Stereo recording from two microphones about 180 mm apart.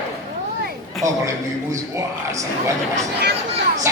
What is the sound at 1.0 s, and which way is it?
Speech, 15° right (ahead or behind).